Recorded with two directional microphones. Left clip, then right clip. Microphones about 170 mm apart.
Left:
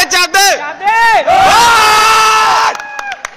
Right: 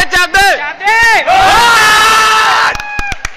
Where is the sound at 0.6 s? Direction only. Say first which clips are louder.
Right 1 dB; 55° left (ahead or behind).